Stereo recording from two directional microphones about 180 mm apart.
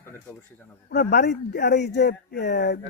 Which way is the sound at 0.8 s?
60° left (ahead or behind).